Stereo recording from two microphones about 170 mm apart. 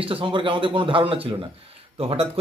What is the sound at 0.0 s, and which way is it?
Speech, 30° right (ahead or behind).